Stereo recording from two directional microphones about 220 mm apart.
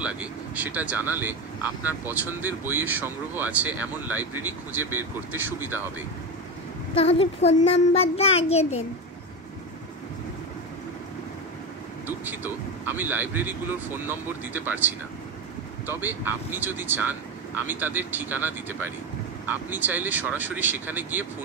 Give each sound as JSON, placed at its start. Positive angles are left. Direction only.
{"t": 0.0, "sound": "speech", "side_deg": -5}
{"t": 7.0, "sound": "a child's voice", "side_deg": 25}
{"t": 12.3, "sound": "speech", "side_deg": -10}